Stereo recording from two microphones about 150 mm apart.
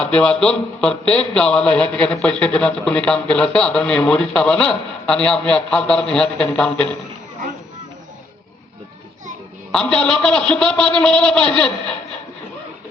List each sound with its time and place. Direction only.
0.0 s a man's voice: 5° left (ahead or behind)
9.7 s a man's voice: 5° left (ahead or behind)